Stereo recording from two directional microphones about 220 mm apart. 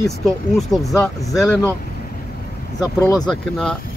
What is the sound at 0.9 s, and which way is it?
Speech, 15° left (ahead or behind).